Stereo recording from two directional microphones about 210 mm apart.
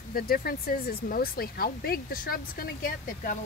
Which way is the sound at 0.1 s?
45° left (ahead or behind).